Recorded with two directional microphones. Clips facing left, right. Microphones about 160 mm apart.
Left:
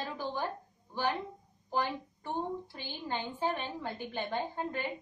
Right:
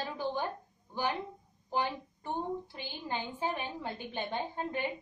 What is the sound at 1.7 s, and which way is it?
A woman's voice, 15° right (ahead or behind).